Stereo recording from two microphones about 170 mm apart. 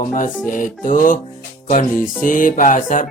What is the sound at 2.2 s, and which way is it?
Speech, 50° left (ahead or behind).